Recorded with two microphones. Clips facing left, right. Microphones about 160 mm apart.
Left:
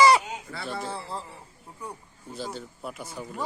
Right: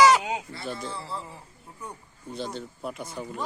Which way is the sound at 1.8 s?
10° left (ahead or behind).